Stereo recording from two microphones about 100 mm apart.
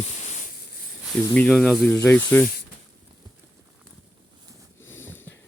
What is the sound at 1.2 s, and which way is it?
Speech, 20° left (ahead or behind).